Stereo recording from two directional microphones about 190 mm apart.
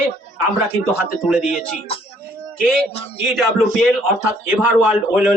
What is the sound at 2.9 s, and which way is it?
Speech, 30° left (ahead or behind).